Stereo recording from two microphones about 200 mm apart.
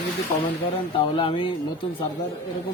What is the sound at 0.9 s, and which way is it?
Speech, 25° left (ahead or behind).